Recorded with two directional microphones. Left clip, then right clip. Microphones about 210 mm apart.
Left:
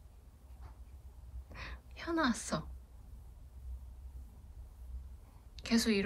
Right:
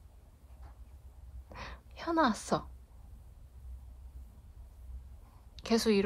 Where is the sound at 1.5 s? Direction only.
20° right (ahead or behind).